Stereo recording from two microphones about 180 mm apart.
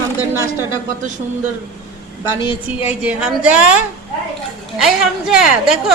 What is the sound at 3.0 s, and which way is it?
Speech, 5° right (ahead or behind).